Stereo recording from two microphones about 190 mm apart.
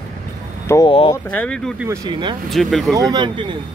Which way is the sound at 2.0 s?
25° right (ahead or behind).